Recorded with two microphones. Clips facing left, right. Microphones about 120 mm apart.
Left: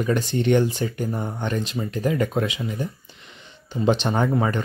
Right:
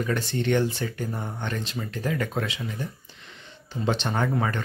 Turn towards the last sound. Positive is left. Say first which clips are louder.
# left 4 dB
turn(degrees=20)  # may be behind; listen again after turning